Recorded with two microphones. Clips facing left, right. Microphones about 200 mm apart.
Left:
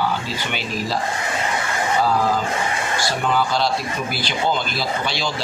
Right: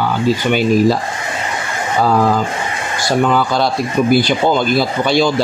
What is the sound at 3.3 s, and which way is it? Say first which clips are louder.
Speech: right 5 dB; 50° right (ahead or behind).